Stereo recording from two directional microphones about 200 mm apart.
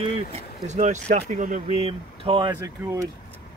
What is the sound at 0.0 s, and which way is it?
Speech, 30° right (ahead or behind).